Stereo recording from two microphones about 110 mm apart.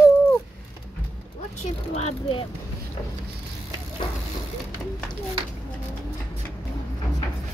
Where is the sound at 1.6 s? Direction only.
75° left (ahead or behind).